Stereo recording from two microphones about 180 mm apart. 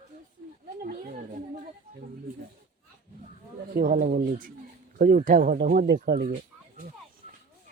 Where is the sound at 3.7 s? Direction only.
50° right (ahead or behind).